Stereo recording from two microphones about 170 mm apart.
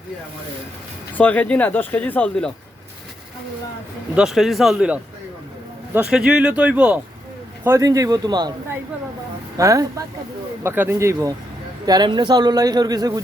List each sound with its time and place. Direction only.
1.1 s speech: 10° left (ahead or behind)
4.1 s speech: 5° right (ahead or behind); by 8.5 s 25° right (ahead or behind)
9.6 s speech: 20° right (ahead or behind)